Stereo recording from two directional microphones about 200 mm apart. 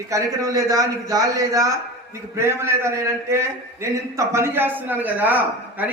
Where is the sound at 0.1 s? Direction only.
15° right (ahead or behind).